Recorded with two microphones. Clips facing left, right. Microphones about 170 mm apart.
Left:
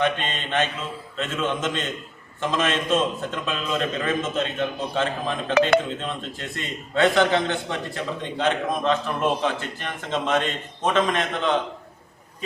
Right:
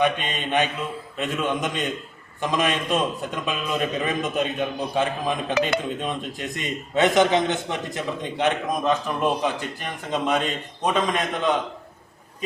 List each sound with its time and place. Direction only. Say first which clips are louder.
0.0 s a man's voice: right 1 dB; 15° right (ahead or behind)